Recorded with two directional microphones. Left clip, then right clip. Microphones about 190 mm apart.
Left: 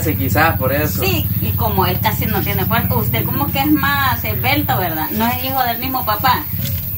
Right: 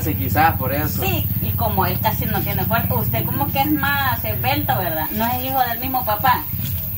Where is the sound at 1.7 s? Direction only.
5° right (ahead or behind).